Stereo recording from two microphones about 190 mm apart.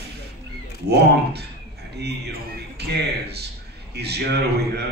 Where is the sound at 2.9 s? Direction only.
60° right (ahead or behind).